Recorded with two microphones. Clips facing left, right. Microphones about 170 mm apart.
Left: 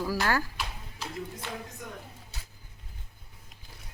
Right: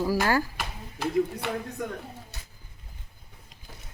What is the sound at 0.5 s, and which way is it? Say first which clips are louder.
Speech: right 2 dB; 55° right (ahead or behind).